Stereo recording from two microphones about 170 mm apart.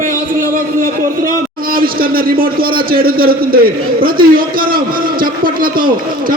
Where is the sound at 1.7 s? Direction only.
60° right (ahead or behind).